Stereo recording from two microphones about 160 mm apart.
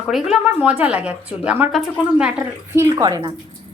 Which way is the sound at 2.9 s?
20° right (ahead or behind).